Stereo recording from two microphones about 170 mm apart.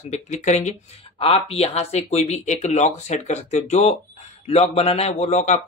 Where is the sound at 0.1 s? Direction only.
45° left (ahead or behind).